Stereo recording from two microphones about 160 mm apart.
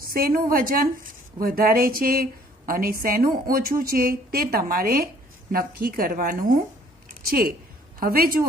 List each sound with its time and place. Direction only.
0.1 s a woman's voice: 65° right (ahead or behind)
7.2 s a woman's voice: 70° right (ahead or behind)